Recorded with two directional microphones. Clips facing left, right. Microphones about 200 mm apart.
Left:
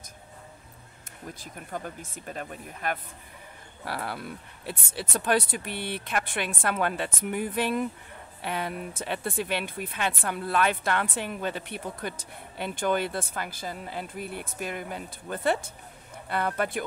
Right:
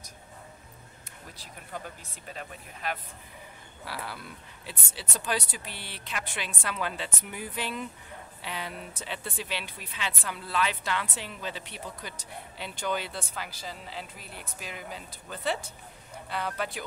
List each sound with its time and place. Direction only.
1.4 s speech: 50° left (ahead or behind)